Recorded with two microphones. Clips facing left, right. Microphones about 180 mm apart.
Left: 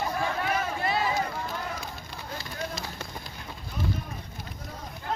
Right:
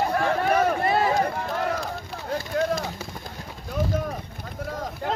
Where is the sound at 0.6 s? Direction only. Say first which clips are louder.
Right 7 dB; 60° right (ahead or behind).